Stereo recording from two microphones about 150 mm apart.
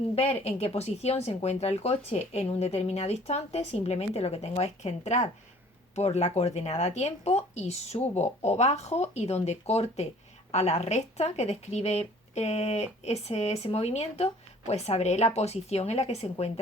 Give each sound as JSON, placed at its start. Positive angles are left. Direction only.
{"t": 0.2, "sound": "speech", "side_deg": 45}